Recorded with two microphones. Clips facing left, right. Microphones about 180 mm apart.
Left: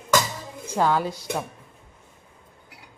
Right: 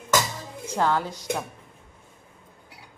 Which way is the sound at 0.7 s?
10° left (ahead or behind).